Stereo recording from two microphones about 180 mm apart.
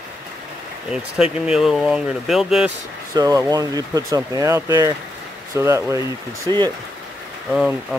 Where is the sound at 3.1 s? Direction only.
20° right (ahead or behind).